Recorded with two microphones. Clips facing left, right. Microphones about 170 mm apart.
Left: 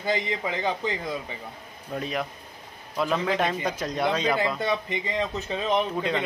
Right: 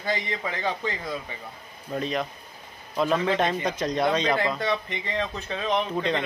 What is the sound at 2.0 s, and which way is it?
A man's voice, 5° left (ahead or behind).